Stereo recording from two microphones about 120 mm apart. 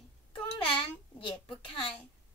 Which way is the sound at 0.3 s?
45° left (ahead or behind).